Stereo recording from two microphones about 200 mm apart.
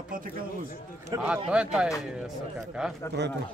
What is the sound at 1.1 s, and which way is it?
Speech, 20° right (ahead or behind).